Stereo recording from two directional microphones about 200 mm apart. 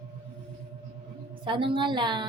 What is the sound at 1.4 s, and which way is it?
Speech, 25° right (ahead or behind).